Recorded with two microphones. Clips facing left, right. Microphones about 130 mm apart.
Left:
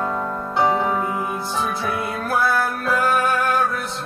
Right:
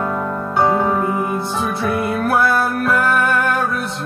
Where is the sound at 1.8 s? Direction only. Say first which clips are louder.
Right 6 dB; 60° right (ahead or behind).